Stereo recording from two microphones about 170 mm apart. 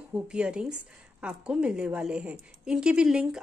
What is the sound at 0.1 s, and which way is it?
A woman's voice, 5° right (ahead or behind).